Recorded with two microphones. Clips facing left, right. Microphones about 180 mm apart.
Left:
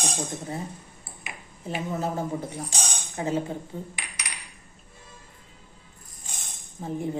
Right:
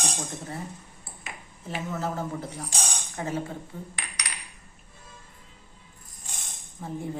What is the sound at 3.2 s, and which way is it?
Speech, 20° left (ahead or behind).